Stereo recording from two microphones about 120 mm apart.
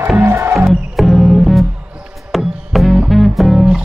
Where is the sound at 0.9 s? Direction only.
Centre (ahead or behind).